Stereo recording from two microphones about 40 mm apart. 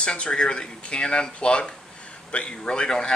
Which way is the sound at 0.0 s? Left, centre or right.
Left.